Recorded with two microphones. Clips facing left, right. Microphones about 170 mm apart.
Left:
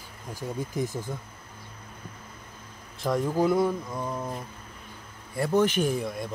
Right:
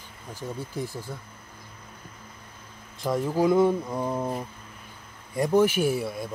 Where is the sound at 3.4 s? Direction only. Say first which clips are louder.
Right 3 dB; 25° right (ahead or behind).